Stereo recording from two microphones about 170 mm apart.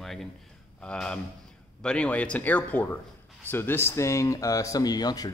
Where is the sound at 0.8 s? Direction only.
5° left (ahead or behind).